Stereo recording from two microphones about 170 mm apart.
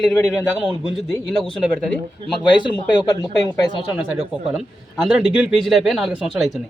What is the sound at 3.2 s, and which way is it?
Speech, 25° left (ahead or behind).